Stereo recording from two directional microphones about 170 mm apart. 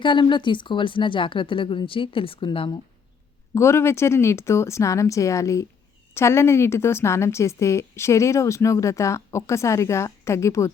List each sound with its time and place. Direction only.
0.0 s a woman's voice: 25° left (ahead or behind)
3.5 s a woman's voice: 15° left (ahead or behind)